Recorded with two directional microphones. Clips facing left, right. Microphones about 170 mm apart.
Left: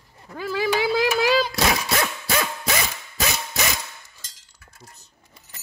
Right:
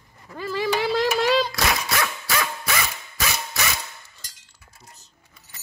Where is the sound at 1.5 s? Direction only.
25° left (ahead or behind).